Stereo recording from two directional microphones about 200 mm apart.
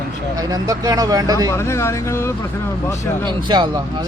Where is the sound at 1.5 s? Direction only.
15° left (ahead or behind).